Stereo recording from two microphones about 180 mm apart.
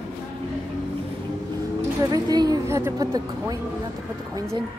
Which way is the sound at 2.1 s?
20° right (ahead or behind).